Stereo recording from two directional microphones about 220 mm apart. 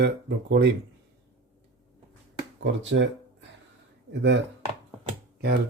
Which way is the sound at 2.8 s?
55° right (ahead or behind).